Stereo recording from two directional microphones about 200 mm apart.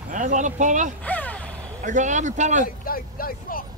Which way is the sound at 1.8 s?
40° right (ahead or behind).